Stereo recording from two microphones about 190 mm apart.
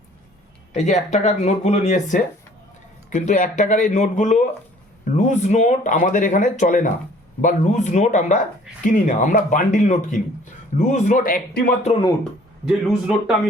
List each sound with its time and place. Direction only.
0.7 s speech: 40° left (ahead or behind)
12.2 s speech: centre (ahead or behind)